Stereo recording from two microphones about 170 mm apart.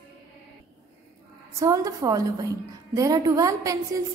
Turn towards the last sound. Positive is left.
turn(degrees=-20)  # may be behind; listen again after turning